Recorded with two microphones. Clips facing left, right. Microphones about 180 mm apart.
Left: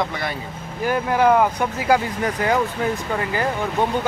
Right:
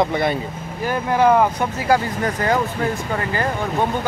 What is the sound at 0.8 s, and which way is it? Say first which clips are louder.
Speech: right 1 dB; 10° left (ahead or behind).